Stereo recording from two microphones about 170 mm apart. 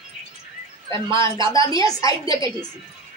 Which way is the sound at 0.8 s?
15° left (ahead or behind).